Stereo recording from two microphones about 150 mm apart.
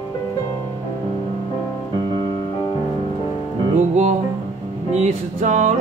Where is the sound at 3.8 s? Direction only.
50° right (ahead or behind).